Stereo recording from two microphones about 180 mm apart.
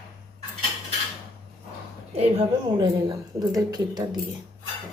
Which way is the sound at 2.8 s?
20° right (ahead or behind).